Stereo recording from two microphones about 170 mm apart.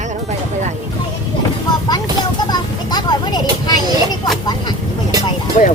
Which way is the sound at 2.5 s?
25° left (ahead or behind).